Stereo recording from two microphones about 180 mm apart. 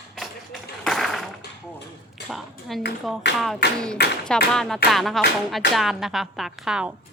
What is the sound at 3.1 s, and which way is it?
Speech, centre (ahead or behind).